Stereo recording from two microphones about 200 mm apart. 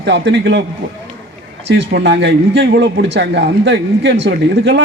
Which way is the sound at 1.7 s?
65° right (ahead or behind).